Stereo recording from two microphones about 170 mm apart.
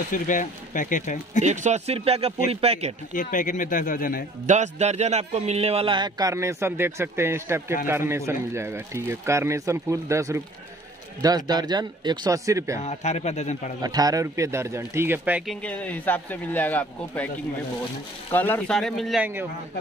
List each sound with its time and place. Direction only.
0.1 s speech: 50° left (ahead or behind)
1.4 s a man's voice: 45° right (ahead or behind)
3.2 s speech: 50° left (ahead or behind)
4.5 s a man's voice: 45° right (ahead or behind); by 12.8 s 20° right (ahead or behind)
12.8 s speech: 40° left (ahead or behind)
13.8 s speech: 20° right (ahead or behind)
15.4 s speech: 10° left (ahead or behind)
18.3 s speech: 10° left (ahead or behind)